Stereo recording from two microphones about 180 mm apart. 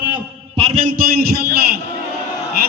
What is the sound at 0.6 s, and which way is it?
A man's voice, 40° right (ahead or behind).